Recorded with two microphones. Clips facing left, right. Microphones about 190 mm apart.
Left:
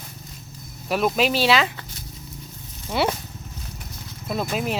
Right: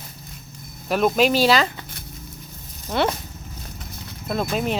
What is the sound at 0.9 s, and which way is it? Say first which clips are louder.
Speech: right 3 dB; centre (ahead or behind).